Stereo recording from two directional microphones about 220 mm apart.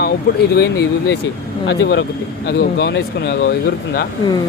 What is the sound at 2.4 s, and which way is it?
Speech, 50° left (ahead or behind).